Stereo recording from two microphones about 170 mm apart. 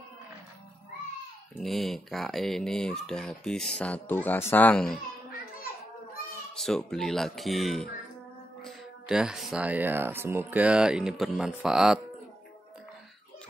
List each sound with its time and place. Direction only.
1.6 s speech: centre (ahead or behind)
6.5 s speech: 5° left (ahead or behind)